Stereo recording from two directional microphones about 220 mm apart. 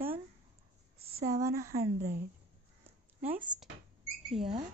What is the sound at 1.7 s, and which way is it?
Speech, 45° right (ahead or behind).